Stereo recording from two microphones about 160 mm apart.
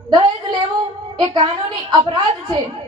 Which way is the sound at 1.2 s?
30° right (ahead or behind).